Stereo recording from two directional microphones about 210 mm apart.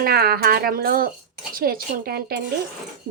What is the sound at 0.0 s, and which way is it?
Speech, 45° right (ahead or behind).